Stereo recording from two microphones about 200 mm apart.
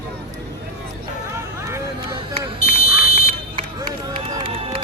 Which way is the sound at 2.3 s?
30° right (ahead or behind).